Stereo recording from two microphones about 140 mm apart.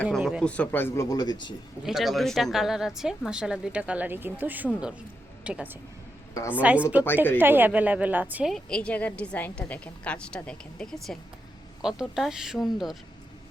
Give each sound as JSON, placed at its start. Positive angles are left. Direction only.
{"t": 0.2, "sound": "a sound", "side_deg": -5}
{"t": 0.4, "sound": "a woman's voice", "side_deg": 10}
{"t": 1.1, "sound": "speech", "side_deg": 25}
{"t": 1.8, "sound": "a woman's voice", "side_deg": 0}
{"t": 6.3, "sound": "a woman's voice", "side_deg": 25}
{"t": 6.6, "sound": "a woman's voice", "side_deg": -10}
{"t": 8.5, "sound": "a woman's voice", "side_deg": 5}